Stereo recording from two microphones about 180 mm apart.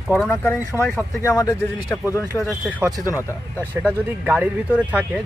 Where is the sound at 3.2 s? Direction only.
10° left (ahead or behind).